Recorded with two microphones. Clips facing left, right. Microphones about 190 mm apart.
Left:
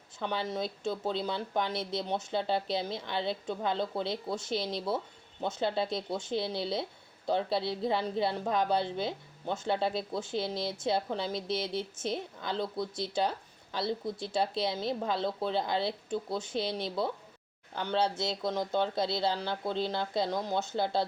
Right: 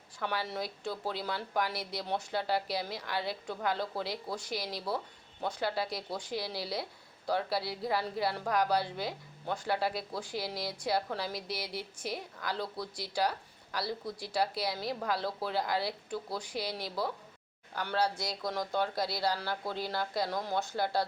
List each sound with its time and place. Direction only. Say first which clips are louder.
0.2 s a woman's voice: left 2 dB; 20° left (ahead or behind)